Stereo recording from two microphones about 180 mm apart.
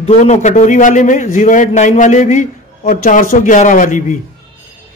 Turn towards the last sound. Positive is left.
turn(degrees=45)  # may be behind; listen again after turning